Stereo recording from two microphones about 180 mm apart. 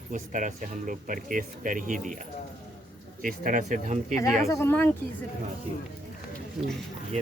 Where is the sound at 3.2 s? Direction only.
50° right (ahead or behind).